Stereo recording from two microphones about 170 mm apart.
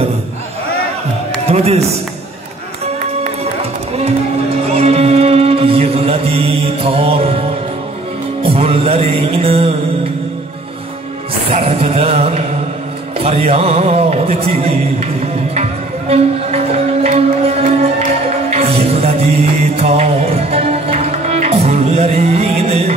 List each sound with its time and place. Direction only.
1.5 s a man's voice: 40° right (ahead or behind)
4.6 s music: 40° right (ahead or behind)
8.4 s music: 35° right (ahead or behind)
11.5 s music: 35° right (ahead or behind)